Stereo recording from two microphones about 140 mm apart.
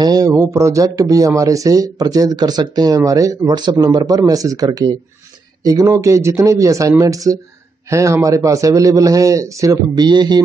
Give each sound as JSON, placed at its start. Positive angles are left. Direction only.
{"t": 0.0, "sound": "speech", "side_deg": -30}